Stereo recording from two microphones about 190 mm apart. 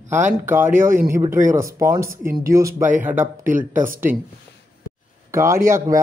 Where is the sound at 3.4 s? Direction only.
45° right (ahead or behind).